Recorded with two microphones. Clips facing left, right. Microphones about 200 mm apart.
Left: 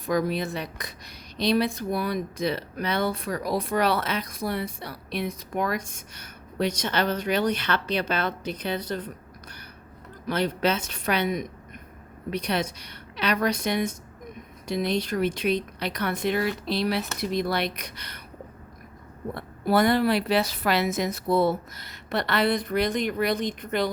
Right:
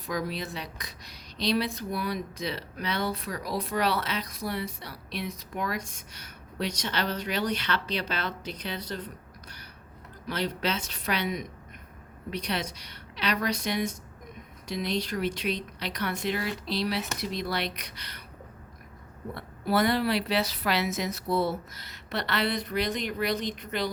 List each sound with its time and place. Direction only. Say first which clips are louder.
0.0 s a woman's voice: left 7 dB; 55° left (ahead or behind)
10.2 s a woman's voice: left 6 dB; 55° left (ahead or behind)
19.3 s a woman's voice: left 4 dB; 50° left (ahead or behind)